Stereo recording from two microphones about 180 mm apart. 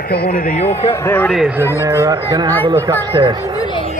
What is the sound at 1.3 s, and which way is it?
Speech, 5° right (ahead or behind).